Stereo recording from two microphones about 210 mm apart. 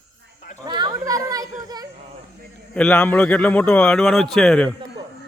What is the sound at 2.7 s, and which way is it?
A man's voice, 5° left (ahead or behind).